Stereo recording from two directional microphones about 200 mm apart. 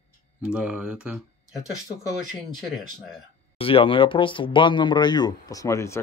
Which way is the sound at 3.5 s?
25° left (ahead or behind).